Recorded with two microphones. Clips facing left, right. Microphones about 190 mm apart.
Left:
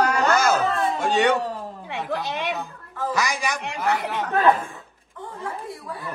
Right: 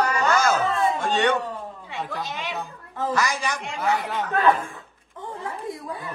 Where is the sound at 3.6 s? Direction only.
65° left (ahead or behind).